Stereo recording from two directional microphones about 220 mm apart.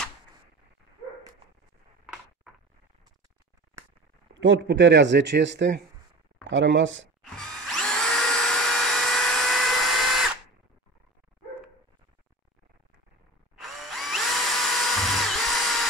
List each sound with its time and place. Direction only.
4.3 s speech: 60° right (ahead or behind)
7.3 s drill: centre (ahead or behind)
13.6 s drill: centre (ahead or behind)